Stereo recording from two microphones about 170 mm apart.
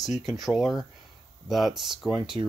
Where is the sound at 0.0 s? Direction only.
Centre (ahead or behind).